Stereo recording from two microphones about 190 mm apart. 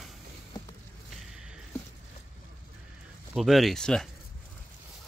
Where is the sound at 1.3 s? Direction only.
5° right (ahead or behind).